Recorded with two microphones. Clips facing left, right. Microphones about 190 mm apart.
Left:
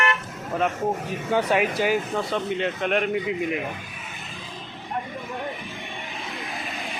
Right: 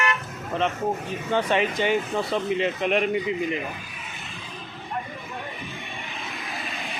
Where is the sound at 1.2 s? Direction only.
10° left (ahead or behind).